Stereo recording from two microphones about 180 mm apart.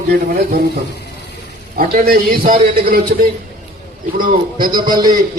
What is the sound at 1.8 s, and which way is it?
A man's voice, 55° right (ahead or behind).